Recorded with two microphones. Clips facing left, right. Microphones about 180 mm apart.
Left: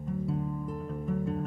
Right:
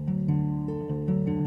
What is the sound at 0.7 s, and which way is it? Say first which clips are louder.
Music: right 5 dB; 20° right (ahead or behind).